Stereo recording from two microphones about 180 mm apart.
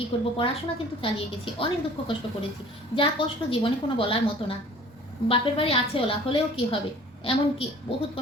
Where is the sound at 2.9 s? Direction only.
30° left (ahead or behind).